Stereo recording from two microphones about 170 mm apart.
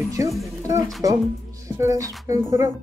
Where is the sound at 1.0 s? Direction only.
20° right (ahead or behind).